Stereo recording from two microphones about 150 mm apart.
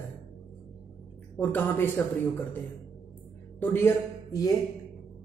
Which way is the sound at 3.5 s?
15° left (ahead or behind).